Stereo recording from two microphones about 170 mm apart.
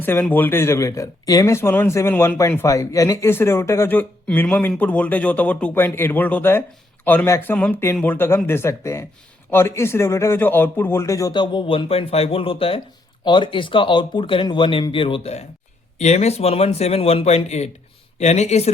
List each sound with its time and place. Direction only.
0.0 s a man's voice: 10° left (ahead or behind); by 18.7 s 40° left (ahead or behind)